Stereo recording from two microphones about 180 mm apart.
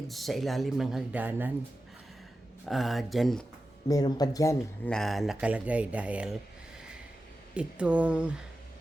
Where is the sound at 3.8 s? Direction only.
20° left (ahead or behind).